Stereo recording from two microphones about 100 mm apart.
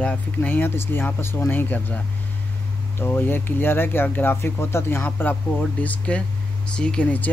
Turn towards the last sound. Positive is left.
turn(degrees=15)  # may be behind; listen again after turning